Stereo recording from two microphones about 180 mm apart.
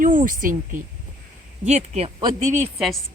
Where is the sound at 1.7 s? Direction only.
35° right (ahead or behind).